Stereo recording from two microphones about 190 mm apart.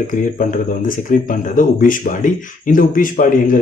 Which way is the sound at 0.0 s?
45° left (ahead or behind).